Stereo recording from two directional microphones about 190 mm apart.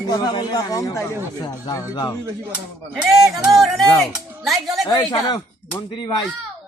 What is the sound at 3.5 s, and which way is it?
Speech, centre (ahead or behind).